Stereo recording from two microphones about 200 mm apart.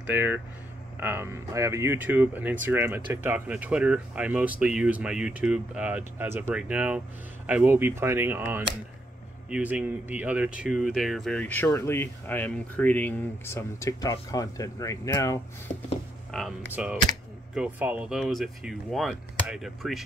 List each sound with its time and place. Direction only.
0.0 s speech: 10° right (ahead or behind); by 15.4 s 15° left (ahead or behind)
16.3 s speech: 5° left (ahead or behind)